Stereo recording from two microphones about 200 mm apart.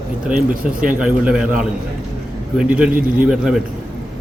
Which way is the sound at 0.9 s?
5° right (ahead or behind).